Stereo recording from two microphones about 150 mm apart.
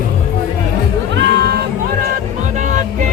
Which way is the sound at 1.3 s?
90° right.